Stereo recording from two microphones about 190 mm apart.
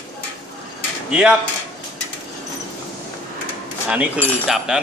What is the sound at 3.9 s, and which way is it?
Speech, 5° right (ahead or behind).